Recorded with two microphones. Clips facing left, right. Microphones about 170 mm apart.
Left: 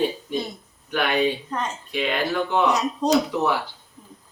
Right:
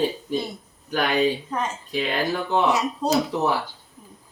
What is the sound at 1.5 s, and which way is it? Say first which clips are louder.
Speech: right 1 dB; 5° right (ahead or behind).